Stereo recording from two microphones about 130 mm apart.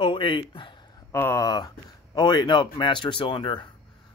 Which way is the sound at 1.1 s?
20° left (ahead or behind).